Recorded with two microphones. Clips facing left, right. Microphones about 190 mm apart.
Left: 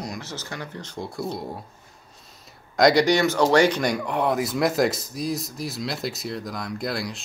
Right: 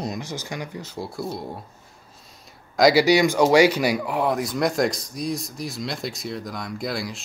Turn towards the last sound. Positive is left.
turn(degrees=0)  # may be behind; listen again after turning